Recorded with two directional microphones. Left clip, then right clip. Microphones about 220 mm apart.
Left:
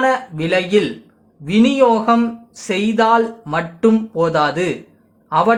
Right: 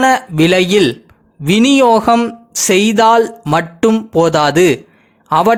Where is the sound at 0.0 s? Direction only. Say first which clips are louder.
Right 6 dB; 45° right (ahead or behind).